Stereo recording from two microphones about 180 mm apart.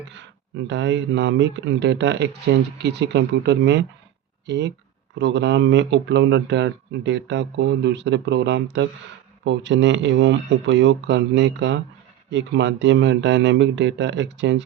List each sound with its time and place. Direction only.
0.1 s speech: 90° right